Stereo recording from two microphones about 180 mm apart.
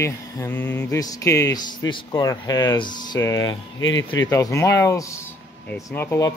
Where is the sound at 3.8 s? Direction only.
90° left.